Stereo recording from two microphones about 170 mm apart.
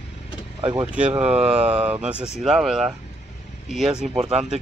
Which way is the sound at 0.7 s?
10° right (ahead or behind).